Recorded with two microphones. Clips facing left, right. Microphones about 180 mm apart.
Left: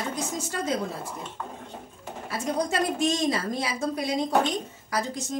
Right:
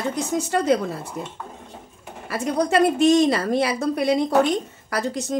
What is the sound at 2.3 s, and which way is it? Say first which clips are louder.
A woman's voice: right 7 dB; 65° right (ahead or behind).